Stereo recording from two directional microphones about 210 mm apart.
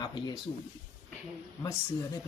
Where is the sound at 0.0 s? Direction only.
20° left (ahead or behind).